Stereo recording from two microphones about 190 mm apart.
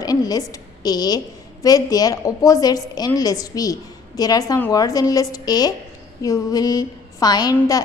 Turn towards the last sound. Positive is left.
turn(degrees=20)  # may be behind; listen again after turning